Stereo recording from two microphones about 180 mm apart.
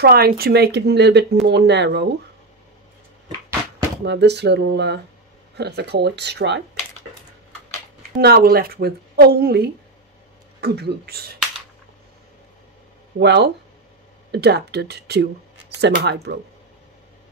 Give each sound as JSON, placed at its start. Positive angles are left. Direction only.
{"t": 0.0, "sound": "speech", "side_deg": -60}
{"t": 4.0, "sound": "speech", "side_deg": -70}
{"t": 8.2, "sound": "speech", "side_deg": -60}
{"t": 13.2, "sound": "speech", "side_deg": -70}